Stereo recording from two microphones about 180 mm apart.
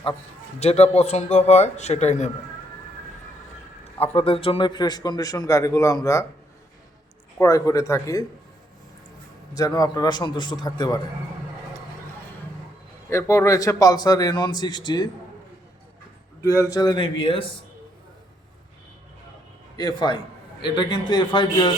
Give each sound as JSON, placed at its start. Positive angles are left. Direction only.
{"t": 0.6, "sound": "a man's voice", "side_deg": 35}
{"t": 4.0, "sound": "a man's voice", "side_deg": 30}
{"t": 7.3, "sound": "speech", "side_deg": 15}
{"t": 9.6, "sound": "a man's voice", "side_deg": 20}
{"t": 13.1, "sound": "a man's voice", "side_deg": 15}
{"t": 16.4, "sound": "a man's voice", "side_deg": 20}
{"t": 19.7, "sound": "a man's voice", "side_deg": 25}